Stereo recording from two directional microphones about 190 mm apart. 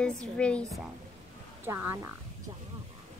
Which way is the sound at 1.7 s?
10° right (ahead or behind).